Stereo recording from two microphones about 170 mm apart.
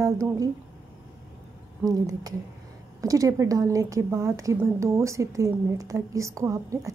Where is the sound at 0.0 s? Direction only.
20° right (ahead or behind).